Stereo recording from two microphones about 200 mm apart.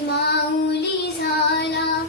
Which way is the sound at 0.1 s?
55° left (ahead or behind).